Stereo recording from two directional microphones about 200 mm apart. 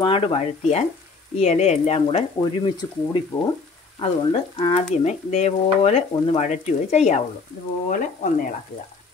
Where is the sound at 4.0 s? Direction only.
25° left (ahead or behind).